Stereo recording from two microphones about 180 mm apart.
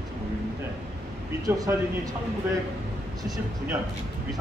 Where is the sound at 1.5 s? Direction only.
15° right (ahead or behind).